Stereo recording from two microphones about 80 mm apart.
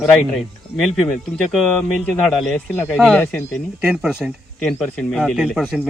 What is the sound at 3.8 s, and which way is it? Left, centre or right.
Speech, centre.